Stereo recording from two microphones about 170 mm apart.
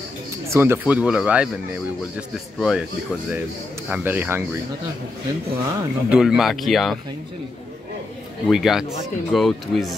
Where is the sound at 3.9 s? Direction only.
10° right (ahead or behind).